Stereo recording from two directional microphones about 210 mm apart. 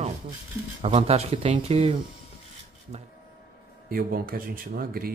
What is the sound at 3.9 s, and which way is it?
Speech, 45° right (ahead or behind).